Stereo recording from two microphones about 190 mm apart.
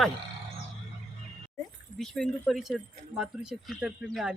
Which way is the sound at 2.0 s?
5° left (ahead or behind).